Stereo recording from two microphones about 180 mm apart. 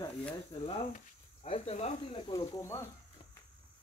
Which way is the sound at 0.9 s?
35° left (ahead or behind).